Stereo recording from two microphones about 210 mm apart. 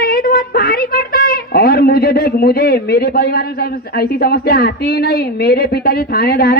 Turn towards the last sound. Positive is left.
turn(degrees=45)  # may be behind; listen again after turning